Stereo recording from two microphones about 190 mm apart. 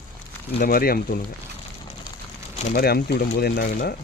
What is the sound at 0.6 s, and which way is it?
Speech, 50° left (ahead or behind).